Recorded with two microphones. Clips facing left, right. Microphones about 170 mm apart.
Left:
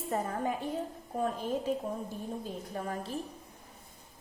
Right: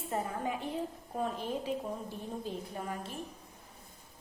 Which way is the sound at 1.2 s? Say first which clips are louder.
Left 3 dB; 45° left (ahead or behind).